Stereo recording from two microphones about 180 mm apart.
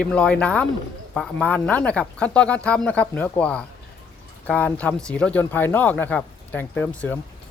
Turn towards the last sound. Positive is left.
turn(degrees=10)  # may be behind; listen again after turning